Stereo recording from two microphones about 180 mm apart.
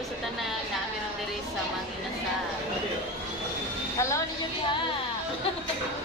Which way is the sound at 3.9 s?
15° left (ahead or behind).